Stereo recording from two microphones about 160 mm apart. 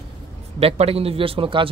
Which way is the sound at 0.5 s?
40° right (ahead or behind).